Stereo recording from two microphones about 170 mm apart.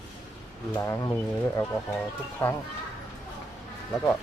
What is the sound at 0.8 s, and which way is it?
Speech, 20° left (ahead or behind).